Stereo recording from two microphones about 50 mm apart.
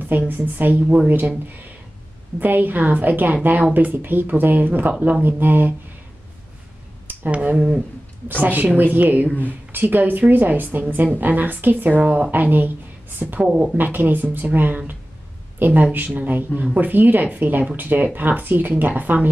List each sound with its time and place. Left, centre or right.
0.3 s speech: right
2.4 s speech: right
7.2 s speech: right
7.5 s speech: centre
8.4 s speech: right
9.3 s speech: left
9.7 s speech: right
12.0 s speech: right
12.3 s speech: right
13.4 s speech: centre
13.7 s speech: right